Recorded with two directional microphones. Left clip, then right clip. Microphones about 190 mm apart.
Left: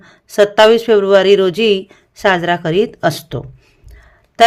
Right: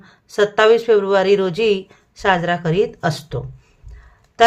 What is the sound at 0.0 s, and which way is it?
Speech, 35° left (ahead or behind).